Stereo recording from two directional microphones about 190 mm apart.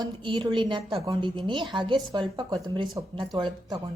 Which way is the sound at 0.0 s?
25° right (ahead or behind).